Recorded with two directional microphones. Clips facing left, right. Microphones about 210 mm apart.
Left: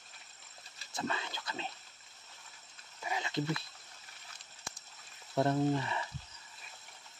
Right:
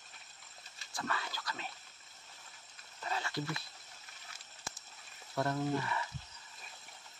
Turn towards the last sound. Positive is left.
turn(degrees=20)  # may be behind; listen again after turning